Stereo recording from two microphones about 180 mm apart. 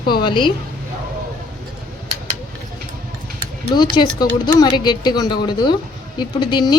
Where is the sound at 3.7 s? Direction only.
25° left (ahead or behind).